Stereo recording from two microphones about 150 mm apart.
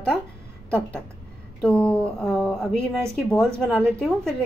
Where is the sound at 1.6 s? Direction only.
10° left (ahead or behind).